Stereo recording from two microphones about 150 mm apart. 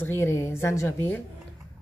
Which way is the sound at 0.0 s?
15° left (ahead or behind).